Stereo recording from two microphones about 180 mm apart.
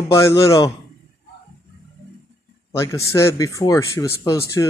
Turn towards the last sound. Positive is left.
turn(degrees=20)  # may be behind; listen again after turning